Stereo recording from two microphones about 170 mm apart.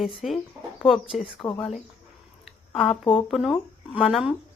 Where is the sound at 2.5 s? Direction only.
Centre (ahead or behind).